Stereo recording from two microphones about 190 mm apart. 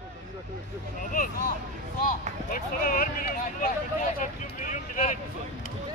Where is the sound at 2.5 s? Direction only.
50° left (ahead or behind).